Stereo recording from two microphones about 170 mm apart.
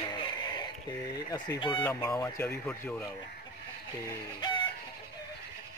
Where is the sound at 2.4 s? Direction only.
5° left (ahead or behind).